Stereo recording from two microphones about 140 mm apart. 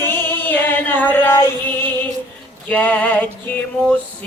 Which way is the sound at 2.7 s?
10° left (ahead or behind).